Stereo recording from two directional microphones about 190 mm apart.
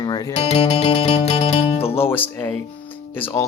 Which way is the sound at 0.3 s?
30° left (ahead or behind).